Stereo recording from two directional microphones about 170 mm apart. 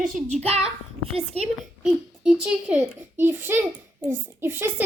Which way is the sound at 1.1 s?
35° right (ahead or behind).